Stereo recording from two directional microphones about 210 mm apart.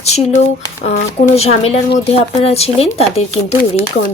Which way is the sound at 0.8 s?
35° left (ahead or behind).